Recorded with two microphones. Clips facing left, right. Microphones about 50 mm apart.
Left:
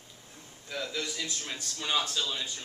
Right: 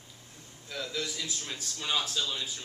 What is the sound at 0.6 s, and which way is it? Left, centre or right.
A man's voice, centre.